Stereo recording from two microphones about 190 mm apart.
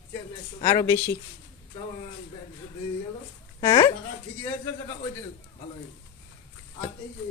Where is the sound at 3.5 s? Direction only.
25° left (ahead or behind).